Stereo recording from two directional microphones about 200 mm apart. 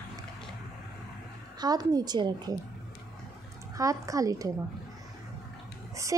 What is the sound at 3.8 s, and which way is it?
Speech, 15° right (ahead or behind).